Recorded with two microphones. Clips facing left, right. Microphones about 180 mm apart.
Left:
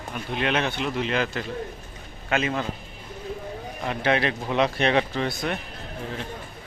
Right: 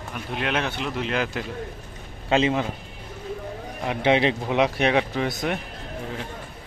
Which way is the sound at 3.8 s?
15° right (ahead or behind).